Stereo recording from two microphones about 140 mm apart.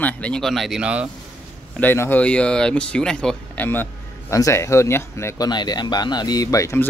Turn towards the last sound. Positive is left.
turn(degrees=20)  # may be behind; listen again after turning